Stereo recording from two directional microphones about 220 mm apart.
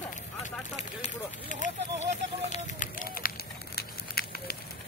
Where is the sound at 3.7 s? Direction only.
45° left (ahead or behind).